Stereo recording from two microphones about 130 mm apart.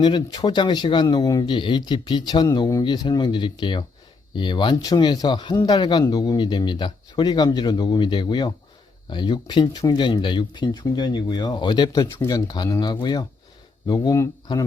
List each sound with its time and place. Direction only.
0.0 s a man's voice: 35° left (ahead or behind)